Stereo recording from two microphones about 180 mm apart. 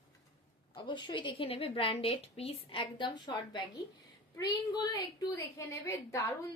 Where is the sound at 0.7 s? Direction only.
25° left (ahead or behind).